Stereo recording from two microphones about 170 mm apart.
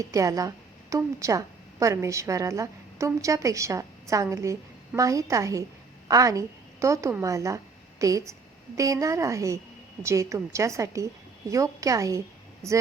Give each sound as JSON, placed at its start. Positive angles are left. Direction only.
{"t": 0.0, "sound": "a woman's voice", "side_deg": -20}
{"t": 12.6, "sound": "speech", "side_deg": 5}